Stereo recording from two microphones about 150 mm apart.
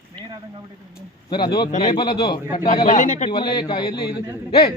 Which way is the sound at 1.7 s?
55° left (ahead or behind).